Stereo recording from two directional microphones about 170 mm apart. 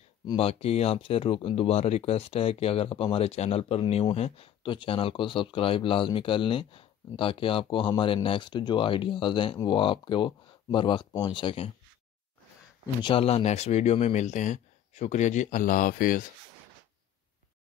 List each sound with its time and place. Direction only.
0.3 s speech: 35° left (ahead or behind)
13.0 s speech: 35° left (ahead or behind); by 16.3 s 55° left (ahead or behind)